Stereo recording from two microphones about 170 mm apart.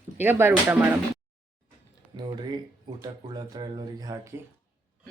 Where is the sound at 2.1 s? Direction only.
25° right (ahead or behind).